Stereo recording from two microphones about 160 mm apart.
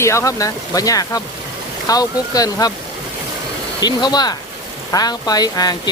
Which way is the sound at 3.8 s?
25° left (ahead or behind).